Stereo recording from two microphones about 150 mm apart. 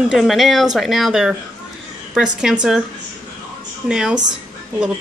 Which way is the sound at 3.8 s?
5° right (ahead or behind).